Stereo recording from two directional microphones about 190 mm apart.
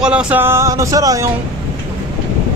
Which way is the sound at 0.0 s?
5° right (ahead or behind).